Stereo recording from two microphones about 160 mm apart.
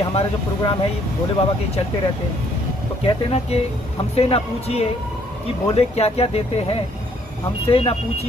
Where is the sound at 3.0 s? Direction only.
40° left (ahead or behind).